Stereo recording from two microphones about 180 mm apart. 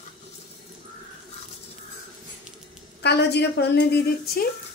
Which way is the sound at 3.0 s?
65° left (ahead or behind).